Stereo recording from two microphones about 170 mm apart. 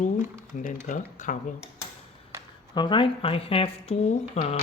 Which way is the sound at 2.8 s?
30° left (ahead or behind).